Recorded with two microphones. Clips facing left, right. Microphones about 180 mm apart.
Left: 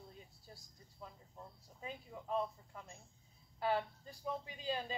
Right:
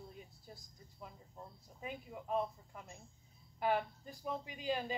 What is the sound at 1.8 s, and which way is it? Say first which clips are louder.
Speech: right 2 dB; 15° right (ahead or behind).